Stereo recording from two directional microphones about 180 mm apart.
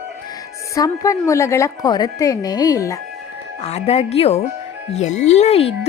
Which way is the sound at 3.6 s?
35° left (ahead or behind).